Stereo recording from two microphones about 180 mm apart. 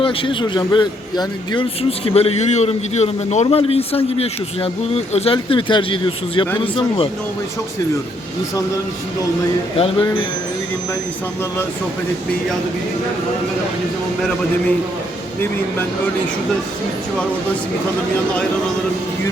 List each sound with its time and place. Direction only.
0.0 s a man's voice: 30° left (ahead or behind)
9.7 s a man's voice: 30° left (ahead or behind)